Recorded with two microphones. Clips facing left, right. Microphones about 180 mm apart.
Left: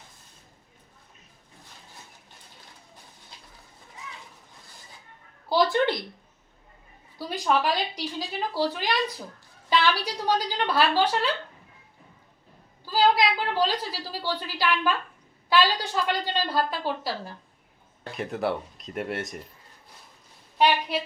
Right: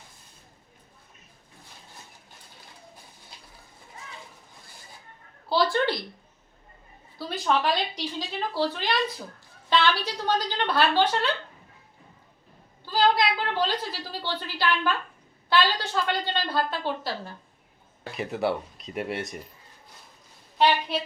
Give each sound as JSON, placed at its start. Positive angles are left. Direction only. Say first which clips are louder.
{"t": 5.5, "sound": "a sound", "louder": "left 1 dB", "side_deg": 15}
{"t": 7.2, "sound": "speech", "louder": "left 1 dB", "side_deg": 10}
{"t": 12.8, "sound": "a woman's voice", "louder": "left 1 dB", "side_deg": 10}
{"t": 18.0, "sound": "speech", "louder": "right 1 dB", "side_deg": 0}
{"t": 20.6, "sound": "speech", "louder": "even", "side_deg": 10}